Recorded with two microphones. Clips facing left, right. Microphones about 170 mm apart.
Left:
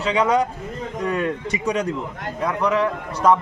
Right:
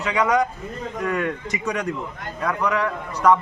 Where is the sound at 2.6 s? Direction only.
25° left (ahead or behind).